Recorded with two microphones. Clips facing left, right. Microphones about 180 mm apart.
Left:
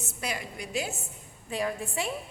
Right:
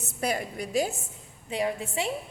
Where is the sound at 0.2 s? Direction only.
45° right (ahead or behind).